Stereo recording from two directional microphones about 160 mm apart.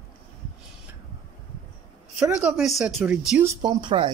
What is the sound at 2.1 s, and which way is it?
Speech, 5° right (ahead or behind).